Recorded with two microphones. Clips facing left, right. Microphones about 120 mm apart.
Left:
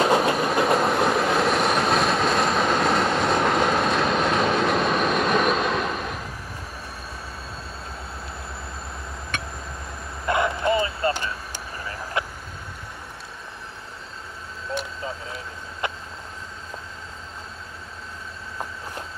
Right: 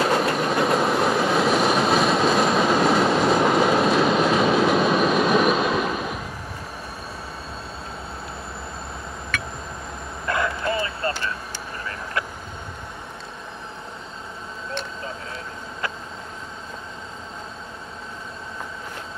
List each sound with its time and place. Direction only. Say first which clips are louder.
0.0 s train: left 1 dB; centre (ahead or behind)
9.3 s a sound: right 1 dB; 25° left (ahead or behind)
10.2 s bow-wow: left 2 dB; 20° left (ahead or behind)